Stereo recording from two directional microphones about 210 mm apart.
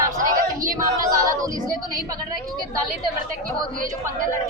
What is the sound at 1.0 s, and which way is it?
Speech, 15° right (ahead or behind).